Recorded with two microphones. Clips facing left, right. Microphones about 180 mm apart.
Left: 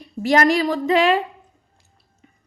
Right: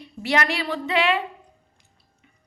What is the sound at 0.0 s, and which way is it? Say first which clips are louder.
Speech: left 7 dB; 40° left (ahead or behind).